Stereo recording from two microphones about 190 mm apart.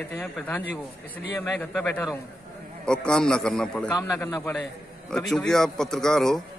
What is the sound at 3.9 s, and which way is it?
Speech, 15° left (ahead or behind).